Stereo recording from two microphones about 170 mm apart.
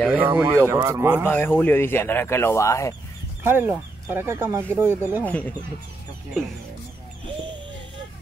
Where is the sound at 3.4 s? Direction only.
10° right (ahead or behind).